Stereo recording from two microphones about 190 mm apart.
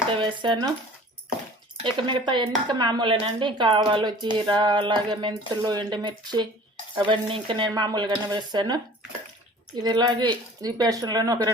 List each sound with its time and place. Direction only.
0.2 s speech: 25° right (ahead or behind)
1.8 s speech: 25° right (ahead or behind)
9.8 s speech: 20° right (ahead or behind)